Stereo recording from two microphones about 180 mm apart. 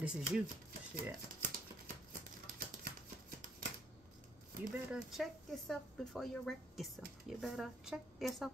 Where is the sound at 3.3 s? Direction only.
50° right (ahead or behind).